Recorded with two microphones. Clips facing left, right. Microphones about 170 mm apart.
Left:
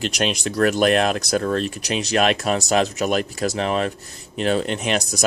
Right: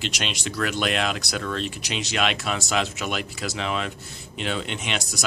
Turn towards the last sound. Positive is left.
turn(degrees=40)  # may be behind; listen again after turning